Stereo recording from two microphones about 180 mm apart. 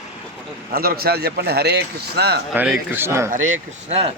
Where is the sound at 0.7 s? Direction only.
55° right (ahead or behind).